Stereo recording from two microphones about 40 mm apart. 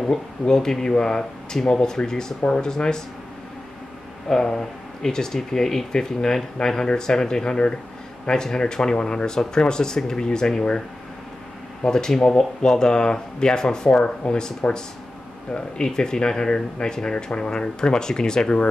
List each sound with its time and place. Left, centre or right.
0.0 s speech: centre
2.4 s speech: left
2.7 s speech: centre
4.3 s speech: centre
11.8 s speech: centre
15.5 s speech: centre